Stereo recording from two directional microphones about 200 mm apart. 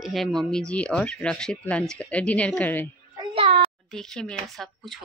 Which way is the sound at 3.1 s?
25° right (ahead or behind).